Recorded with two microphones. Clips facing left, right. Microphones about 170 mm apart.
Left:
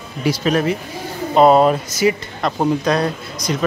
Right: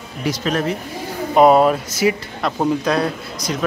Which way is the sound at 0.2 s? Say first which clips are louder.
Left 3 dB; 5° left (ahead or behind).